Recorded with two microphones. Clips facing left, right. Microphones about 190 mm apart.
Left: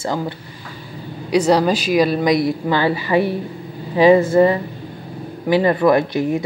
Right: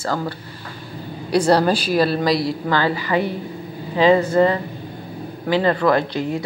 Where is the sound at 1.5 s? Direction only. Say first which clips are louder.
Left 1 dB; 15° left (ahead or behind).